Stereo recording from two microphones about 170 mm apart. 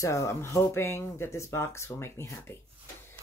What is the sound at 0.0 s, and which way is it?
Speech, 15° left (ahead or behind).